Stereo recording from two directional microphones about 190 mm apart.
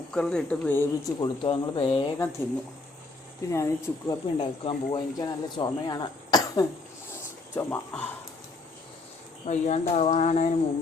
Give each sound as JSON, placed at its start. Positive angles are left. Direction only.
{"t": 0.1, "sound": "speech", "side_deg": 5}
{"t": 3.5, "sound": "speech", "side_deg": 15}
{"t": 7.5, "sound": "speech", "side_deg": 10}
{"t": 9.5, "sound": "speech", "side_deg": 35}